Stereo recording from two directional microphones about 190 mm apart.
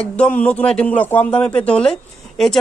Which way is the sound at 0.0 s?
5° left (ahead or behind).